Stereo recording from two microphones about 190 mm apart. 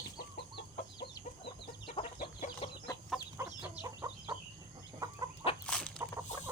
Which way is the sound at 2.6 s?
30° left (ahead or behind).